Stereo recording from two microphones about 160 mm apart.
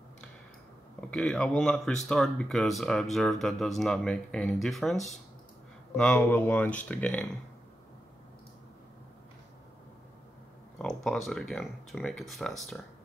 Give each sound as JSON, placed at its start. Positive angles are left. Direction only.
{"t": 1.1, "sound": "speech", "side_deg": 5}
{"t": 5.9, "sound": "speech", "side_deg": 10}
{"t": 10.8, "sound": "speech", "side_deg": 0}